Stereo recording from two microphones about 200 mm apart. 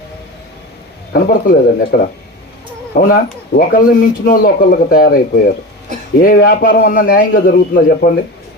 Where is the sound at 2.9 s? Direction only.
45° left (ahead or behind).